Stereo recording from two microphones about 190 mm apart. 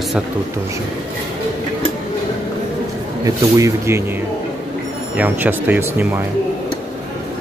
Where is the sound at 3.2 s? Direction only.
15° right (ahead or behind).